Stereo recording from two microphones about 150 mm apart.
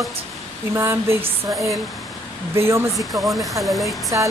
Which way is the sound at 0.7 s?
15° right (ahead or behind).